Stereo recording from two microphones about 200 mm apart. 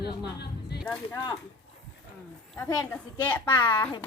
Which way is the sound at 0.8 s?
5° left (ahead or behind).